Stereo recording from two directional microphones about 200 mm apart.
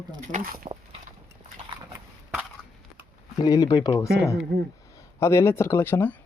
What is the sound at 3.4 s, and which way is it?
Speech, 20° left (ahead or behind).